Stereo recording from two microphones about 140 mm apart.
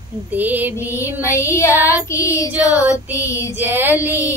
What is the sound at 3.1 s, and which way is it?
Speech, 20° left (ahead or behind).